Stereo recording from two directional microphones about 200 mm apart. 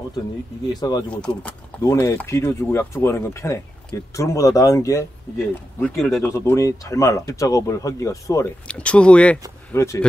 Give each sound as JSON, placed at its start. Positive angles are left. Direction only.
{"t": 0.7, "sound": "speech", "side_deg": 20}
{"t": 1.1, "sound": "speech", "side_deg": 5}